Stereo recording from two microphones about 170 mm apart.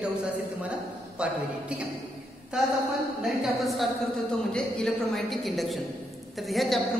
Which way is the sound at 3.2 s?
Centre (ahead or behind).